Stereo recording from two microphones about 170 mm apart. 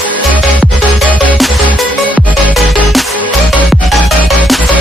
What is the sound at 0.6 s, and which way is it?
Music, centre (ahead or behind).